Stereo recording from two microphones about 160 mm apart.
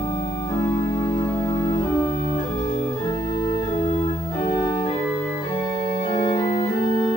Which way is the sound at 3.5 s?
35° left (ahead or behind).